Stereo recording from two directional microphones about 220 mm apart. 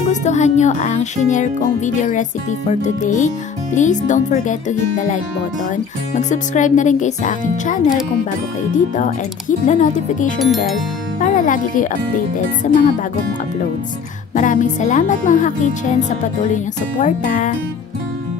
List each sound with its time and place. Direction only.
0.1 s speech: 30° left (ahead or behind)
10.4 s speech: centre (ahead or behind)
11.1 s speech: 35° left (ahead or behind)
14.3 s speech: 35° left (ahead or behind)